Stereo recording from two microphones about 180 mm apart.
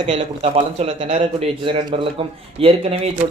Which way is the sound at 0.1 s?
35° right (ahead or behind).